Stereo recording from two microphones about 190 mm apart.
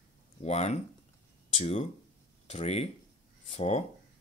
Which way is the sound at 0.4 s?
35° left (ahead or behind).